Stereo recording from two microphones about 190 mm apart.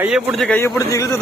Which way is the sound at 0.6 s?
15° left (ahead or behind).